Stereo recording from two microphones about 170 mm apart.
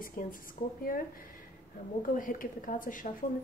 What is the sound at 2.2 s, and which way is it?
Speech, 50° left (ahead or behind).